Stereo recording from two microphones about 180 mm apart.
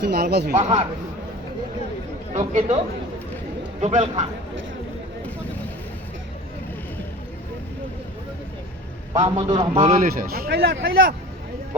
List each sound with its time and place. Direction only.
0.0 s speech: 60° right (ahead or behind)
0.5 s speech: 40° right (ahead or behind)
2.3 s speech: 40° right (ahead or behind)
3.8 s speech: 40° right (ahead or behind)
9.1 s a man's voice: 35° right (ahead or behind); by 11.1 s 70° right (ahead or behind)